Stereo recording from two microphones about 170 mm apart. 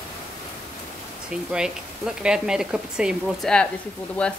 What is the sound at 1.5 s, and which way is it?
A woman's voice, 5° right (ahead or behind).